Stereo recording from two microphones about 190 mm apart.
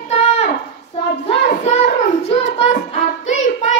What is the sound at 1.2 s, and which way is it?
Child singing, 35° left (ahead or behind).